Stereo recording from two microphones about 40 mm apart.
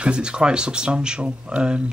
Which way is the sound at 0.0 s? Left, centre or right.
Right.